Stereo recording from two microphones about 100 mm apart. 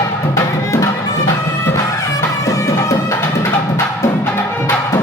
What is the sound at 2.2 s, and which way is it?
Music, 35° left (ahead or behind).